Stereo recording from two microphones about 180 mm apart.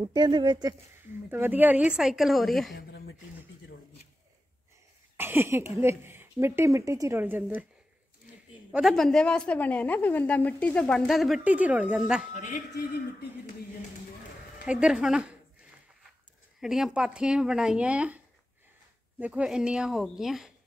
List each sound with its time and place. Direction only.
0.0 s a woman's voice: 25° right (ahead or behind)
1.3 s a woman's voice: 10° right (ahead or behind)
5.1 s speech: 10° right (ahead or behind)
8.7 s a woman's voice: centre (ahead or behind)
14.6 s a woman's voice: 5° right (ahead or behind)
16.6 s a woman's voice: 5° right (ahead or behind)